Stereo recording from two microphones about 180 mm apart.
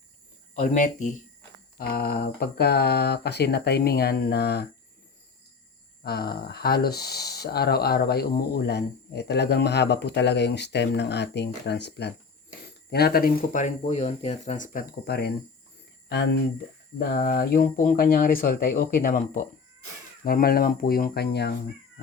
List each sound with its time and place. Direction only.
0.5 s speech: 45° left (ahead or behind)
1.8 s speech: 55° left (ahead or behind)
6.0 s speech: 60° left (ahead or behind)
12.9 s speech: 60° left (ahead or behind)
15.0 s speech: 65° left (ahead or behind)
17.0 s speech: 55° left (ahead or behind)